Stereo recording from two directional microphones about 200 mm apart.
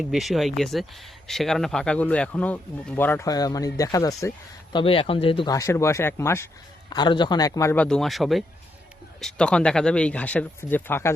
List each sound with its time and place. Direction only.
0.0 s speech: centre (ahead or behind)